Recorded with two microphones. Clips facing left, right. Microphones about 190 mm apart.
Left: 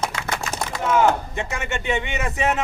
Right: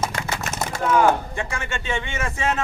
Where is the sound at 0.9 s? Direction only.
20° left (ahead or behind).